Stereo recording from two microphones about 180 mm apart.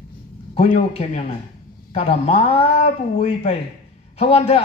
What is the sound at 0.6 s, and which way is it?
Speech, 35° left (ahead or behind).